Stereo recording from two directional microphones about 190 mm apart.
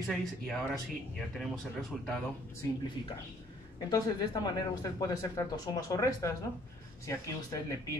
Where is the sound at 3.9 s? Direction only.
20° left (ahead or behind).